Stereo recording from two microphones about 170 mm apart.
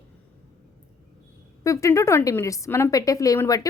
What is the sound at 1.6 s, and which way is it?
A woman's voice, 15° left (ahead or behind).